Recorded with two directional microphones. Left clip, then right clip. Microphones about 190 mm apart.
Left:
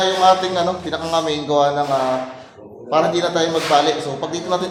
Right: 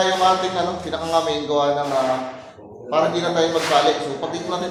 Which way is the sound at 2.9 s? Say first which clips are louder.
Left 2 dB; 55° left (ahead or behind).